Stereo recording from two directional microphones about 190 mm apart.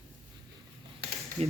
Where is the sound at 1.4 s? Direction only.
35° right (ahead or behind).